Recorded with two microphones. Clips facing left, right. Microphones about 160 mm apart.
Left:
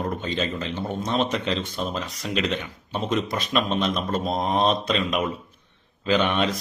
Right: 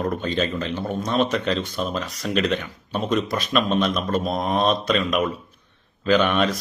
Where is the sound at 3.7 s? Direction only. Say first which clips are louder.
Right 3 dB; 25° left (ahead or behind).